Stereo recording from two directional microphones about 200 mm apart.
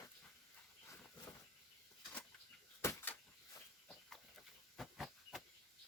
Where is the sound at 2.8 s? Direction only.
10° left (ahead or behind).